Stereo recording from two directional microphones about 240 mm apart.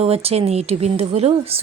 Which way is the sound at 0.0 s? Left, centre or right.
Right.